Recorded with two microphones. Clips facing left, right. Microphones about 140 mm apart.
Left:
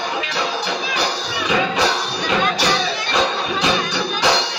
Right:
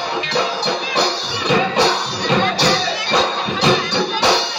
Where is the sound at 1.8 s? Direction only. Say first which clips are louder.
Right 3 dB; 35° right (ahead or behind).